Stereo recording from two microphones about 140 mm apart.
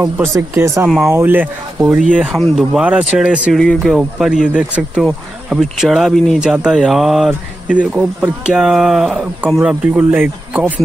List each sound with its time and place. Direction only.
0.0 s speech: 20° right (ahead or behind)